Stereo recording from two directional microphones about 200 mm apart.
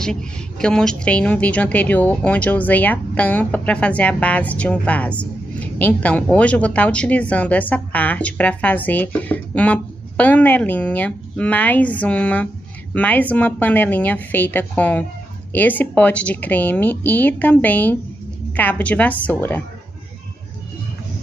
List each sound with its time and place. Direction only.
0.0 s a woman's voice: 5° left (ahead or behind)